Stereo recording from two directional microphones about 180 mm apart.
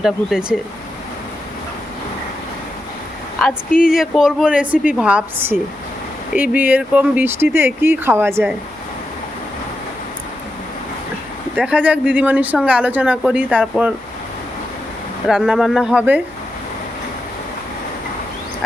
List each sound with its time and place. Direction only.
0.0 s a woman's voice: 5° right (ahead or behind)
3.7 s speech: 50° left (ahead or behind)
3.9 s a woman's voice: centre (ahead or behind)
11.5 s speech: 5° right (ahead or behind)
15.3 s a woman's voice: 5° right (ahead or behind)